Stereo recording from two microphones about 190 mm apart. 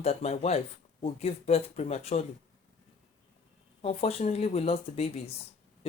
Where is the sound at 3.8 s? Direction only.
35° left (ahead or behind).